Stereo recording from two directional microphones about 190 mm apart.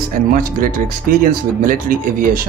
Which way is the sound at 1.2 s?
50° right (ahead or behind).